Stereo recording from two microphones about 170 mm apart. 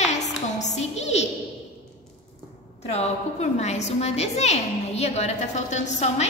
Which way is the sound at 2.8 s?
40° left (ahead or behind).